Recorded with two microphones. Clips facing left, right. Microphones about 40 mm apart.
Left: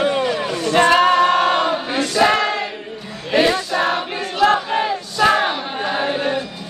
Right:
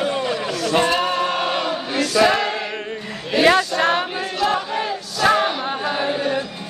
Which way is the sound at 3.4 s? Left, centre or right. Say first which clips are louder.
Right 3 dB; right.